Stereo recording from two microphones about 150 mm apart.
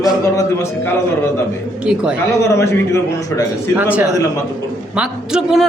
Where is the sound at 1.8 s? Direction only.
5° right (ahead or behind).